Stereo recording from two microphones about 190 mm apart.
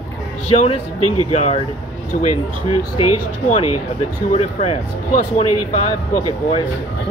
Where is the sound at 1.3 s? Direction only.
35° left (ahead or behind).